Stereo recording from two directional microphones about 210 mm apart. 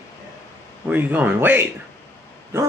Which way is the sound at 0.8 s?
5° right (ahead or behind).